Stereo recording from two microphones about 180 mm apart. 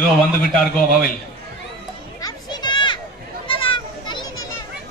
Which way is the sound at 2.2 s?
20° left (ahead or behind).